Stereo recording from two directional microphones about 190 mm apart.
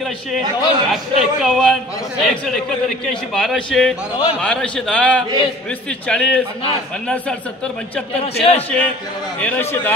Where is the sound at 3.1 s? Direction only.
5° left (ahead or behind).